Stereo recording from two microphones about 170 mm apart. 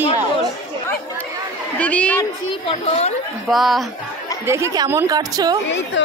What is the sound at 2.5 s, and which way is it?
Speech, 35° left (ahead or behind).